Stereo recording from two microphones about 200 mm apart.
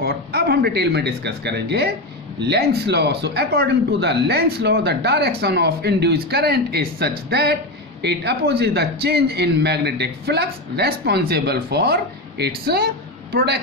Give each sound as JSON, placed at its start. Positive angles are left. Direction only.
{"t": 0.0, "sound": "speech", "side_deg": -55}